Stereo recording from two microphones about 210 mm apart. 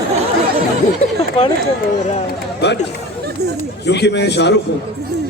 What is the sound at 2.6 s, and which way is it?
Speech, 55° left (ahead or behind).